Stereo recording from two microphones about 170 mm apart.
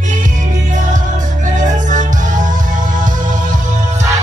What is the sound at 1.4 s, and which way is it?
Music, 45° right (ahead or behind).